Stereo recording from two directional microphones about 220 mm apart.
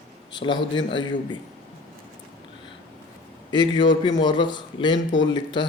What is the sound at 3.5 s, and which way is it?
A man's voice, 20° left (ahead or behind).